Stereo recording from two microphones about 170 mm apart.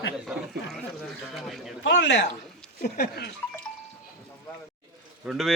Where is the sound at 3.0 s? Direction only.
70° left (ahead or behind).